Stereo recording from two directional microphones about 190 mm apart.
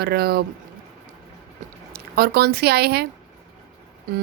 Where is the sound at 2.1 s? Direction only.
55° right (ahead or behind).